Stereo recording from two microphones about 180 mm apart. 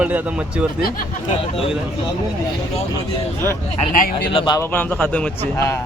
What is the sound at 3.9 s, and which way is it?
Speech, 55° left (ahead or behind).